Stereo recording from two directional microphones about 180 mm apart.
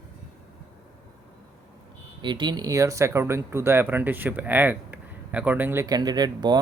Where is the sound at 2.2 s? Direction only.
25° right (ahead or behind).